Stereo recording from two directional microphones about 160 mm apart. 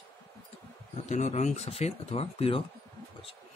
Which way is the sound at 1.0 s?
50° left (ahead or behind).